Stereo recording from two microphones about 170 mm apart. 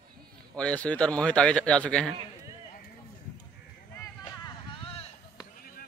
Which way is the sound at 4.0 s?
20° left (ahead or behind).